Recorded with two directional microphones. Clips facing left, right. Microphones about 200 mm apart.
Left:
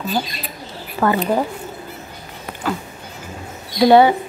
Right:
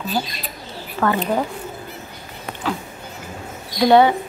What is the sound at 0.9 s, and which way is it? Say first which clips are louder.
Speech: left 2 dB; 10° left (ahead or behind).